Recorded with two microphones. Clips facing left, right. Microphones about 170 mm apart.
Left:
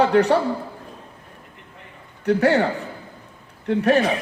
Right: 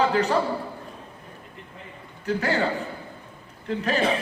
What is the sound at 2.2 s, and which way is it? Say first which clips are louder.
Speech: left 7 dB; 70° left (ahead or behind).